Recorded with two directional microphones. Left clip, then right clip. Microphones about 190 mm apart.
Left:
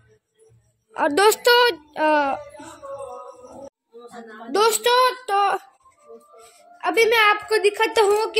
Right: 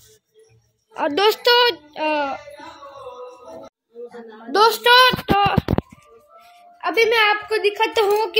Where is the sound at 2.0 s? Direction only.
15° left (ahead or behind).